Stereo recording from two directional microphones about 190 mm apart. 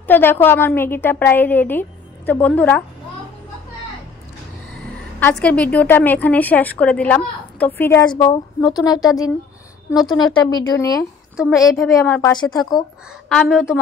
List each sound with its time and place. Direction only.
0.0 s a woman's voice: 10° left (ahead or behind)
5.4 s a woman's voice: 10° left (ahead or behind)
8.1 s a woman's voice: 25° left (ahead or behind)
13.3 s a woman's voice: centre (ahead or behind)